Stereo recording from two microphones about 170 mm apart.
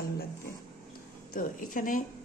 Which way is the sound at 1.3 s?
55° left (ahead or behind).